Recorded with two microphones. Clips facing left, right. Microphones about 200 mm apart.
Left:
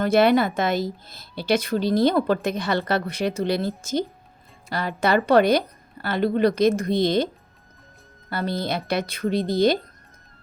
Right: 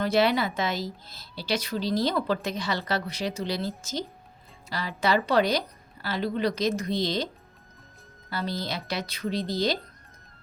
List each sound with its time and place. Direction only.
0.0 s speech: 50° left (ahead or behind)
4.7 s a woman's voice: 55° left (ahead or behind)
8.3 s a woman's voice: 55° left (ahead or behind)